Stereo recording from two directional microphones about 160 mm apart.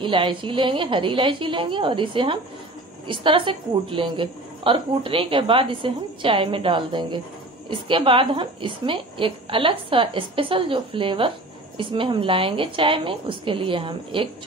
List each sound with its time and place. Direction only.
0.0 s a woman's voice: 30° right (ahead or behind)